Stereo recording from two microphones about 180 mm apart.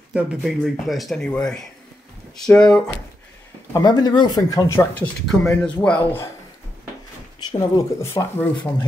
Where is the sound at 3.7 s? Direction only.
20° left (ahead or behind).